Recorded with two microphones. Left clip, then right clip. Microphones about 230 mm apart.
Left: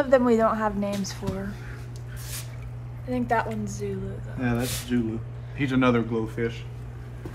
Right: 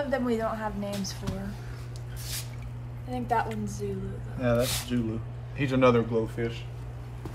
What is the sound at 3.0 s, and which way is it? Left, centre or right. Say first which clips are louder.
Speech: left 3 dB; centre.